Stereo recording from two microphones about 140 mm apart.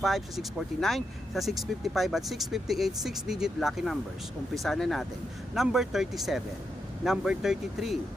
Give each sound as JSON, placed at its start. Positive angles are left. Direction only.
{"t": 0.0, "sound": "speech", "side_deg": 0}